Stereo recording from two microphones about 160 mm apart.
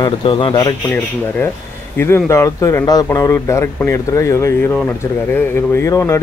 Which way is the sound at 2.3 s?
20° left (ahead or behind).